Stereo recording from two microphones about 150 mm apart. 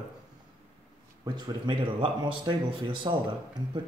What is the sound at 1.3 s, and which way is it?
Speech, 30° right (ahead or behind).